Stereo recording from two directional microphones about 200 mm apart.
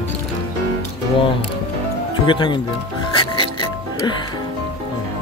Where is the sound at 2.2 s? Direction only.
25° left (ahead or behind).